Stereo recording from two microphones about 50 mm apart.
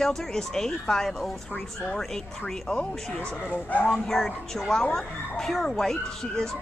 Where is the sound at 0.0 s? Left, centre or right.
Centre.